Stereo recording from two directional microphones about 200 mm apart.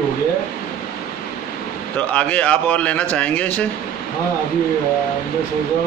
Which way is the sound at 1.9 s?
5° left (ahead or behind).